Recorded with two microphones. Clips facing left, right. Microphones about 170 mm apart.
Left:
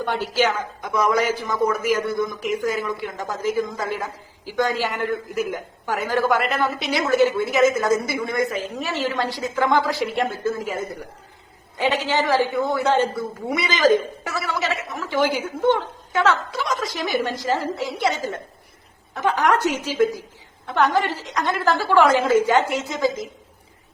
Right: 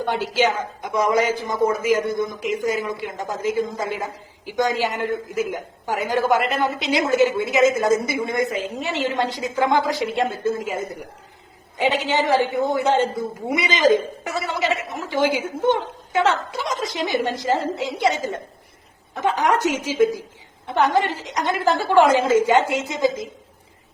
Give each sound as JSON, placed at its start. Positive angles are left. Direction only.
{"t": 0.0, "sound": "a woman's voice", "side_deg": -15}
{"t": 20.7, "sound": "a woman's voice", "side_deg": -20}